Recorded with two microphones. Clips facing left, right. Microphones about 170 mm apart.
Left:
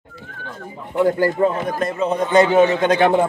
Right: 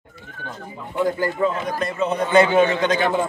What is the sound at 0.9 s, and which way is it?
A man's voice, 60° left (ahead or behind).